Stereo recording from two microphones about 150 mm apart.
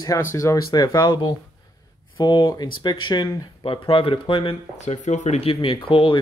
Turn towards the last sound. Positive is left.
turn(degrees=35)  # may be behind; listen again after turning